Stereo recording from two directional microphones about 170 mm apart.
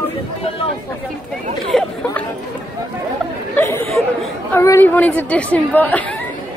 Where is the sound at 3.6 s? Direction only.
15° left (ahead or behind).